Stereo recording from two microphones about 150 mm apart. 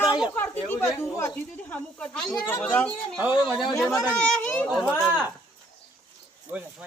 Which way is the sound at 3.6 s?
Centre (ahead or behind).